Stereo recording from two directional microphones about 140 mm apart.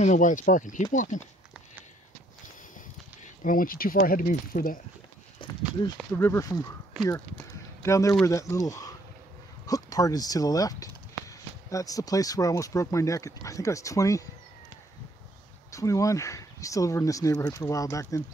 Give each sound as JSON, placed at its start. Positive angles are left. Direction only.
{"t": 0.0, "sound": "speech", "side_deg": 65}
{"t": 3.4, "sound": "speech", "side_deg": 90}
{"t": 5.4, "sound": "a sound", "side_deg": 35}
{"t": 5.8, "sound": "speech", "side_deg": 30}
{"t": 6.1, "sound": "speech", "side_deg": 20}
{"t": 7.8, "sound": "speech", "side_deg": 20}
{"t": 15.7, "sound": "speech", "side_deg": 25}